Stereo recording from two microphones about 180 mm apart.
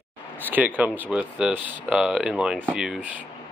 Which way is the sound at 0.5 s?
10° right (ahead or behind).